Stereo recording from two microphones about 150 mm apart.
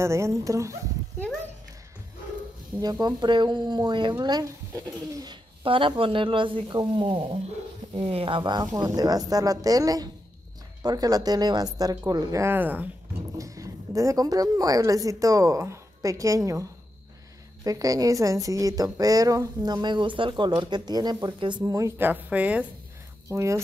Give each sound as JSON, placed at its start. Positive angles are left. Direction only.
{"t": 0.0, "sound": "a woman's voice", "side_deg": -20}
{"t": 2.8, "sound": "a woman's voice", "side_deg": -25}
{"t": 13.4, "sound": "a woman's voice", "side_deg": -20}
{"t": 17.6, "sound": "a woman's voice", "side_deg": -25}
{"t": 23.2, "sound": "speech", "side_deg": -20}